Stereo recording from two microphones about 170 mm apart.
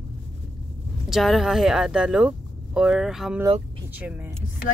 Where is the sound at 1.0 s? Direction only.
Centre (ahead or behind).